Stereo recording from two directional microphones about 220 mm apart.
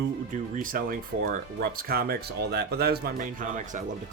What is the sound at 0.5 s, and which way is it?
Speech, 40° right (ahead or behind).